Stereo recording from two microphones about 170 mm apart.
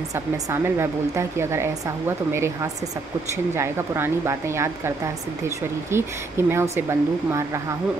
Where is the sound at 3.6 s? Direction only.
15° right (ahead or behind).